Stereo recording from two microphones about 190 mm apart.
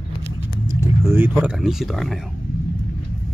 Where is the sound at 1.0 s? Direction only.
10° right (ahead or behind).